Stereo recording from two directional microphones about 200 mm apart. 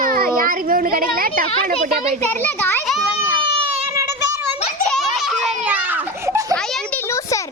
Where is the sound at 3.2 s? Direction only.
15° right (ahead or behind).